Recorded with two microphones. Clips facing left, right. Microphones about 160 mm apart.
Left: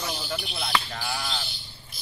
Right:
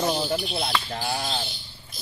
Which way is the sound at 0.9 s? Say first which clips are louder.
Right 4 dB; 30° right (ahead or behind).